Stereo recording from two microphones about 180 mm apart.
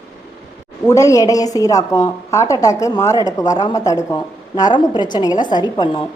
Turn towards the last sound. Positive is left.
turn(degrees=25)  # may be behind; listen again after turning